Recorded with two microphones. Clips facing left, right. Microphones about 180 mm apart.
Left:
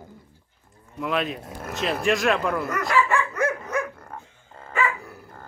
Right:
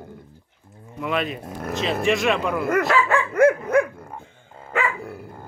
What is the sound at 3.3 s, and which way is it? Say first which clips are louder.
Dog: right 9 dB; 55° right (ahead or behind).